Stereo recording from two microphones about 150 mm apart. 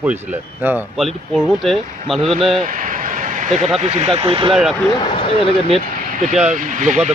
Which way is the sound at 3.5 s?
50° right (ahead or behind).